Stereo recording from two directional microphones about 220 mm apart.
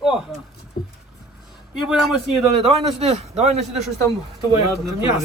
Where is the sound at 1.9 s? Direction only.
Centre (ahead or behind).